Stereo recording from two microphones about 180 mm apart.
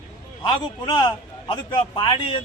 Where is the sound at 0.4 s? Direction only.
25° left (ahead or behind).